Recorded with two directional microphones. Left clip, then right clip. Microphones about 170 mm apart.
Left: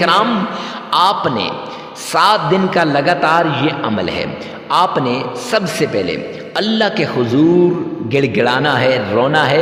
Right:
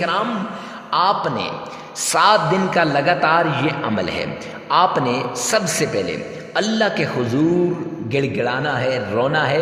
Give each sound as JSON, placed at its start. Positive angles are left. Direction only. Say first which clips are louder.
{"t": 0.0, "sound": "a man's voice", "louder": "left 8 dB", "side_deg": 30}